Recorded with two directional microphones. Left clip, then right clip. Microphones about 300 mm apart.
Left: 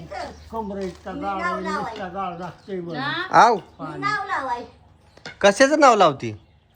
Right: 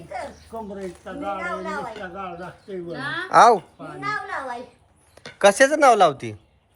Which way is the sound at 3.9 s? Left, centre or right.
Right.